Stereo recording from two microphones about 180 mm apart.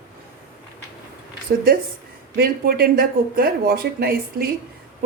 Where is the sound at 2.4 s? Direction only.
55° right (ahead or behind).